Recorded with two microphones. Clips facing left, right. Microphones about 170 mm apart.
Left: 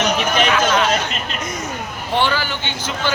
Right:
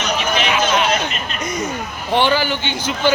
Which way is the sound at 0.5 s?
20° right (ahead or behind).